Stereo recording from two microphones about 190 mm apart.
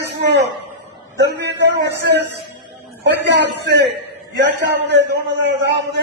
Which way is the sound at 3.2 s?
65° right (ahead or behind).